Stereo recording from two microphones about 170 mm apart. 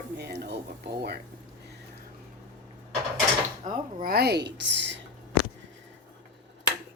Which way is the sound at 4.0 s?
65° right (ahead or behind).